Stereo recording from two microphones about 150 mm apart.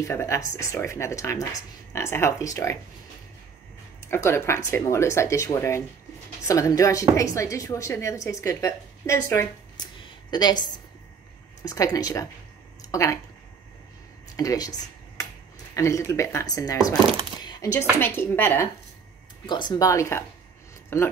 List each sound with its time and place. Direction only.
0.0 s a woman's voice: 20° left (ahead or behind)
4.0 s a woman's voice: 15° left (ahead or behind)
10.3 s a woman's voice: 30° left (ahead or behind)
14.3 s speech: 25° left (ahead or behind)
15.7 s a woman's voice: 20° left (ahead or behind)
17.4 s a sound: 25° left (ahead or behind)
17.9 s a woman's voice: 15° left (ahead or behind)
19.4 s a woman's voice: 30° left (ahead or behind); by 21.1 s 15° left (ahead or behind)